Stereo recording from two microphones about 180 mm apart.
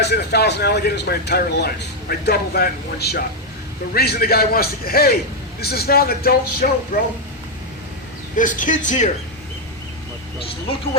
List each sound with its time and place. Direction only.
0.0 s speech: 65° left (ahead or behind)
8.4 s a man's voice: 45° left (ahead or behind)